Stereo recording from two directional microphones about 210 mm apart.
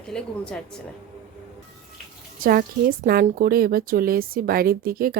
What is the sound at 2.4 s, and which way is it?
A woman's voice, 40° right (ahead or behind).